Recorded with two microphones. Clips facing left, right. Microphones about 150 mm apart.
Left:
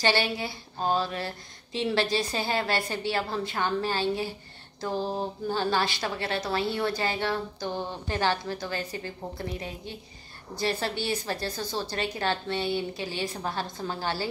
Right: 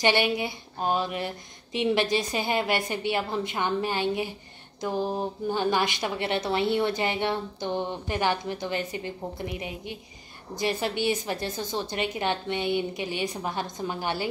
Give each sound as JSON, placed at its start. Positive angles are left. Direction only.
{"t": 0.0, "sound": "speech", "side_deg": -20}